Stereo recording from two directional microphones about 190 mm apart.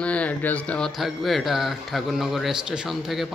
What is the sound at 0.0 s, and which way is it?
Speech, 5° left (ahead or behind).